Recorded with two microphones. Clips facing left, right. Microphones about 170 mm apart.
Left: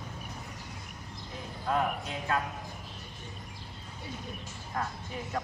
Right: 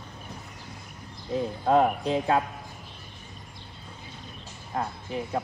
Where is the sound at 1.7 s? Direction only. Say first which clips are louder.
Right 9 dB; 30° right (ahead or behind).